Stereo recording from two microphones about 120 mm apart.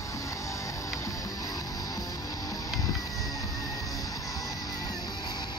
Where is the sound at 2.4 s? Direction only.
30° left (ahead or behind).